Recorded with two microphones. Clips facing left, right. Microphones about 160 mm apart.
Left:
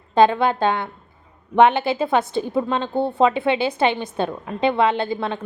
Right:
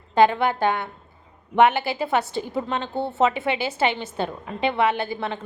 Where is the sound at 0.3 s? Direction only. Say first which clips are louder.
Left 3 dB; 20° left (ahead or behind).